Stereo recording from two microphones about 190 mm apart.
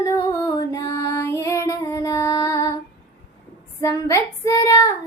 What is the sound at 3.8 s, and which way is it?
Female singing, 15° left (ahead or behind).